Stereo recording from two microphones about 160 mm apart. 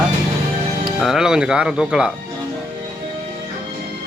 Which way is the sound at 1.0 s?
5° right (ahead or behind).